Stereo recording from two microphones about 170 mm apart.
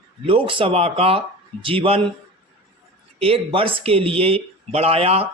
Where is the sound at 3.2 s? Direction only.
35° right (ahead or behind).